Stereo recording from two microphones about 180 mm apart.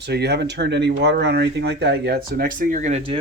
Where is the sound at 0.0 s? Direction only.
70° right (ahead or behind).